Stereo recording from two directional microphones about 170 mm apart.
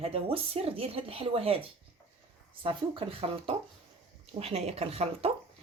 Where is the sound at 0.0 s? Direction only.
35° right (ahead or behind).